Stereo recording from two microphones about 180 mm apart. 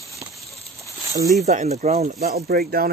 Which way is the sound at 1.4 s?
40° right (ahead or behind).